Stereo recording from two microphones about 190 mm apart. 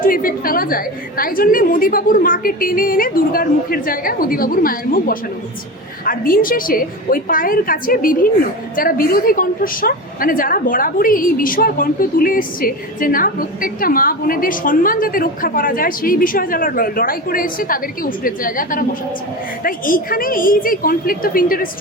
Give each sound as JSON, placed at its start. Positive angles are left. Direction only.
{"t": 0.0, "sound": "a woman's voice", "side_deg": 45}